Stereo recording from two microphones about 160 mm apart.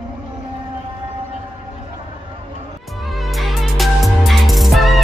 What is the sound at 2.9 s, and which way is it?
Music, centre (ahead or behind).